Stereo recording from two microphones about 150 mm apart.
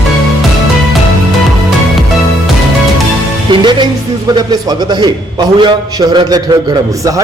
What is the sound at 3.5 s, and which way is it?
A man's voice, 30° right (ahead or behind).